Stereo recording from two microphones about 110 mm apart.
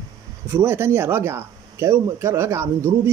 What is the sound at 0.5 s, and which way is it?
Speech, 25° right (ahead or behind).